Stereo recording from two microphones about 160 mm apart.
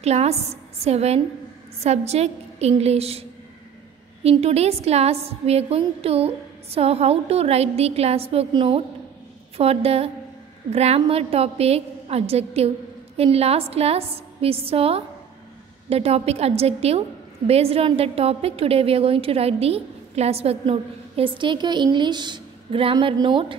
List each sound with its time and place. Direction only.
0.0 s a woman's voice: 40° right (ahead or behind)